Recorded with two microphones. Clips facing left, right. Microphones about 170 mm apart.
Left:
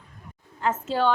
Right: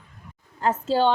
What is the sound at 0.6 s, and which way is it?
Speech, 30° right (ahead or behind).